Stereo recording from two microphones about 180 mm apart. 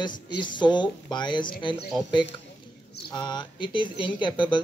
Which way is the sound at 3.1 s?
25° left (ahead or behind).